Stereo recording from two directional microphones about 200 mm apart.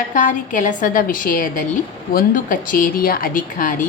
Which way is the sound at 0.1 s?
40° left (ahead or behind).